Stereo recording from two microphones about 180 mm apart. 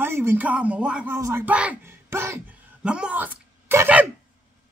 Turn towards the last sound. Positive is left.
turn(degrees=-10)  # may be behind; listen again after turning